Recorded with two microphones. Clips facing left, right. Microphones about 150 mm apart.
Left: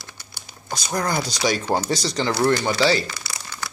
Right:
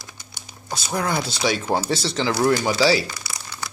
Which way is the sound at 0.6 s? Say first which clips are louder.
Even; 5° right (ahead or behind).